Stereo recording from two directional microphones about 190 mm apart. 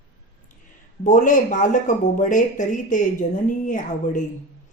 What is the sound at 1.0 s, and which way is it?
Speech, 40° left (ahead or behind).